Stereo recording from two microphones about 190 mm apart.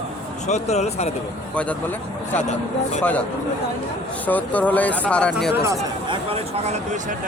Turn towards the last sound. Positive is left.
turn(degrees=-35)  # may be behind; listen again after turning